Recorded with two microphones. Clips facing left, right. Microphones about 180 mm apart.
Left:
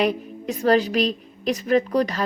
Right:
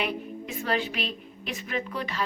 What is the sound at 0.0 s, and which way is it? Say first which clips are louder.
A woman's voice: left 8 dB; 40° left (ahead or behind).